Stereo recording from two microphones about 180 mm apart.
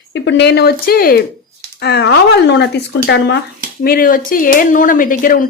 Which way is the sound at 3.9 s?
50° left (ahead or behind).